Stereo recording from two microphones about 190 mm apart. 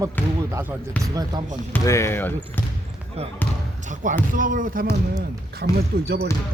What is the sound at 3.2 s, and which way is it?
Speech, 35° right (ahead or behind).